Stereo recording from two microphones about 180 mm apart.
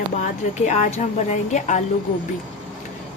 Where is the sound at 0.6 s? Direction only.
40° left (ahead or behind).